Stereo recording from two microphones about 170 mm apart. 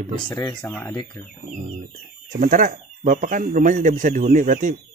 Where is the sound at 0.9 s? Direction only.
25° left (ahead or behind).